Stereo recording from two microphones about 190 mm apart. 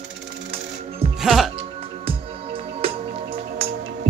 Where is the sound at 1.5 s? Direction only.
30° right (ahead or behind).